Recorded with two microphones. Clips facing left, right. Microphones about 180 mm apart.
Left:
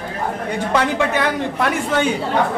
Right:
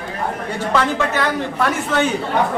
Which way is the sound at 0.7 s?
15° left (ahead or behind).